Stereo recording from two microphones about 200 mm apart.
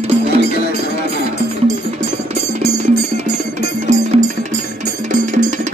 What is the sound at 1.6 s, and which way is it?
Music, 35° right (ahead or behind).